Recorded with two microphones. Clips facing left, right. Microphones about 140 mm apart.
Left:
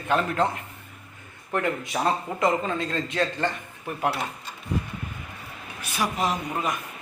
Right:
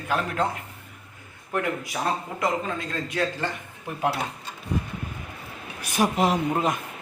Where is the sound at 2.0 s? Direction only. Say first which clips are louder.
Left 3 dB; centre (ahead or behind).